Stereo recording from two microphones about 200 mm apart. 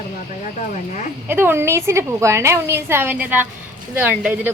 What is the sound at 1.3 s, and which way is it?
A woman's voice, 10° right (ahead or behind).